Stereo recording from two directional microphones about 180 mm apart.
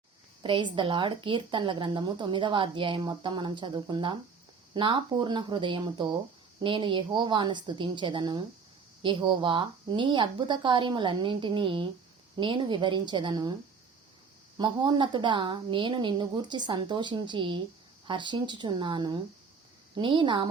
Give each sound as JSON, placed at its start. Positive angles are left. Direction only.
{"t": 0.4, "sound": "speech", "side_deg": -25}
{"t": 14.6, "sound": "speech", "side_deg": -25}